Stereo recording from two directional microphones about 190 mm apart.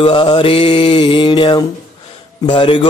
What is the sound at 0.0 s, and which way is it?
Mantra, 25° left (ahead or behind).